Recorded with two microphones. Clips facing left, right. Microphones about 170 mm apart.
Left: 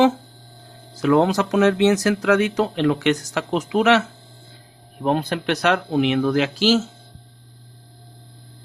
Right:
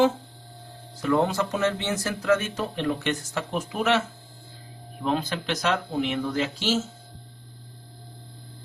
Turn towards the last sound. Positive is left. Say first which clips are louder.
# left 8 dB
turn(degrees=75)  # may be behind; listen again after turning